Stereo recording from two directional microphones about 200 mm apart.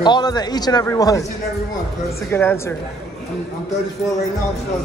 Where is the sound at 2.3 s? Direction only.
10° left (ahead or behind).